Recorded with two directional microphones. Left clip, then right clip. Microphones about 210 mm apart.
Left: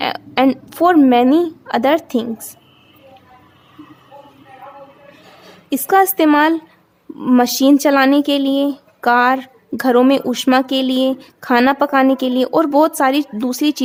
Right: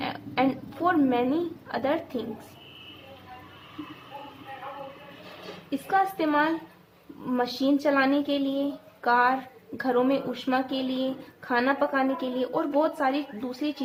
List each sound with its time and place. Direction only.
0.0 s a woman's voice: 55° left (ahead or behind)
5.9 s speech: 55° left (ahead or behind)